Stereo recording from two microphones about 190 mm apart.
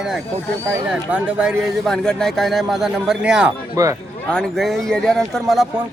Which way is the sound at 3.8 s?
15° right (ahead or behind).